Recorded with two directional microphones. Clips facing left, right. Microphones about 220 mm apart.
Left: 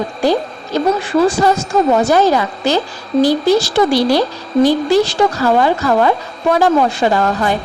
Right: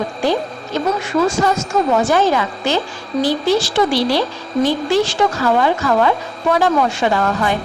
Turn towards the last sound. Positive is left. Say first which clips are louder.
# left 2 dB
turn(degrees=35)  # may be behind; listen again after turning